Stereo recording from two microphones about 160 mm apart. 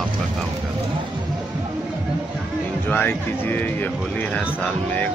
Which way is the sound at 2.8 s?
10° left (ahead or behind).